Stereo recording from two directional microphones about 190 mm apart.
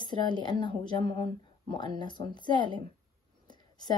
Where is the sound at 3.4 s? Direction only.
20° left (ahead or behind).